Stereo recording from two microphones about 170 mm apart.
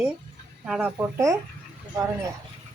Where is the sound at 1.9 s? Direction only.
20° right (ahead or behind).